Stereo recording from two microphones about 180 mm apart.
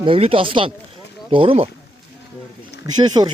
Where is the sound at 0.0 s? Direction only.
30° right (ahead or behind).